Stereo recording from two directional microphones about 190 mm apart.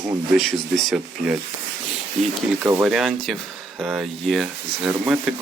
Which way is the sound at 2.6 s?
5° right (ahead or behind).